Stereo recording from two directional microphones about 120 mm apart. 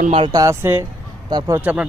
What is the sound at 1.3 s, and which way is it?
Speech, 35° right (ahead or behind).